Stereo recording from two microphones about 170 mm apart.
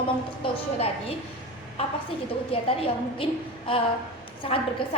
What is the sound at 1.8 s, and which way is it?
A woman's voice, 35° left (ahead or behind).